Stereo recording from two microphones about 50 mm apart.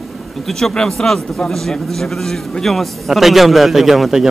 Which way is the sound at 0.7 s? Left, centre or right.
Centre.